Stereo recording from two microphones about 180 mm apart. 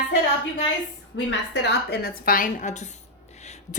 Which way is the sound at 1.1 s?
70° left (ahead or behind).